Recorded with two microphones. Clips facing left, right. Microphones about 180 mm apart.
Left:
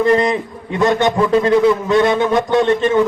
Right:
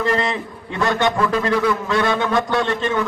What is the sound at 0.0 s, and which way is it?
A man's voice, 20° left (ahead or behind).